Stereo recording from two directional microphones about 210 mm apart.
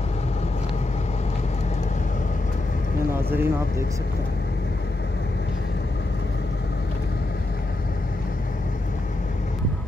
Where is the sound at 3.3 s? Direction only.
10° right (ahead or behind).